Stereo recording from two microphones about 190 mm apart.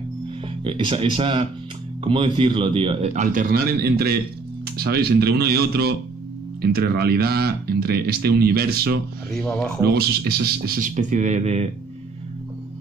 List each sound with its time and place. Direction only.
0.7 s speech: 25° right (ahead or behind); by 8.9 s 55° right (ahead or behind)
9.3 s speech: 5° left (ahead or behind)
9.8 s speech: 55° right (ahead or behind); by 11.7 s 35° right (ahead or behind)